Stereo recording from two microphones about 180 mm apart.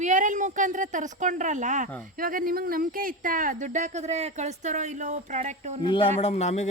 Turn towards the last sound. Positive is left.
turn(degrees=40)  # may be behind; listen again after turning